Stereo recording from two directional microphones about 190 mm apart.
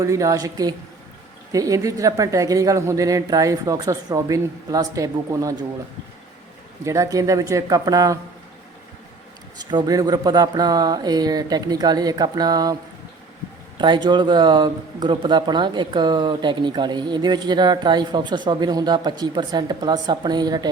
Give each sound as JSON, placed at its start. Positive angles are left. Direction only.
{"t": 0.0, "sound": "speech", "side_deg": -15}
{"t": 6.8, "sound": "speech", "side_deg": -15}
{"t": 9.6, "sound": "speech", "side_deg": -20}
{"t": 13.7, "sound": "speech", "side_deg": -25}